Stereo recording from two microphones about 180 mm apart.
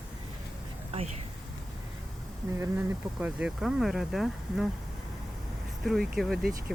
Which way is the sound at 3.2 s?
5° right (ahead or behind).